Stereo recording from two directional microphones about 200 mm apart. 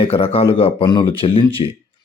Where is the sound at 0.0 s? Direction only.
30° left (ahead or behind).